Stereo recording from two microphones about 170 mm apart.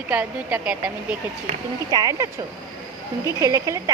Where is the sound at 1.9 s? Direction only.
20° right (ahead or behind).